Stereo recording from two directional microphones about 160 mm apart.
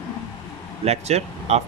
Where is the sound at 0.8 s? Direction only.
40° right (ahead or behind).